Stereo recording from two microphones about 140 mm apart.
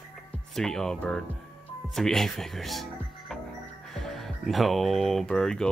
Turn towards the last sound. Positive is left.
turn(degrees=5)  # may be behind; listen again after turning